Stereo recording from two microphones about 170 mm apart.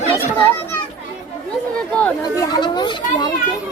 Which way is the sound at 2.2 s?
20° left (ahead or behind).